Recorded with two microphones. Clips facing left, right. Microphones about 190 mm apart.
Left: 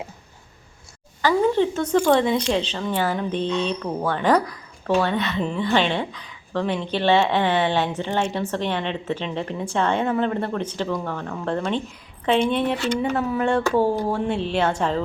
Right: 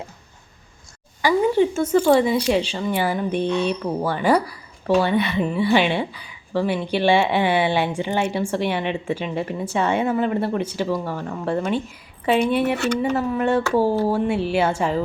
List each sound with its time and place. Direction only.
1.2 s a woman's voice: 10° right (ahead or behind)
12.7 s speech: 70° right (ahead or behind)
13.0 s a woman's voice: 5° right (ahead or behind)